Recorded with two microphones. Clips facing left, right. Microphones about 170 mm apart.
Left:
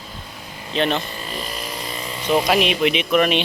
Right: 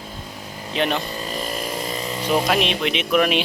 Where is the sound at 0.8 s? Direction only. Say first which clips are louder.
Left 2 dB; 10° right (ahead or behind).